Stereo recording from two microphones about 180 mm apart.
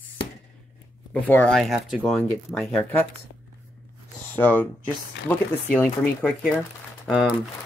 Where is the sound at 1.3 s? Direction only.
10° left (ahead or behind).